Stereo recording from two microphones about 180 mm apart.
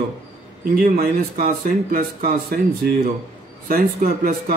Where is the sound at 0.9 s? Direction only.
55° right (ahead or behind).